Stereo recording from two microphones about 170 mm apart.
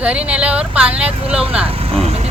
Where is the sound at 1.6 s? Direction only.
35° right (ahead or behind).